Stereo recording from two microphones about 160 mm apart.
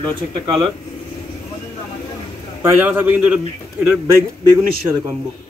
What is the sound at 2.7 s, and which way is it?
Speech, 10° right (ahead or behind).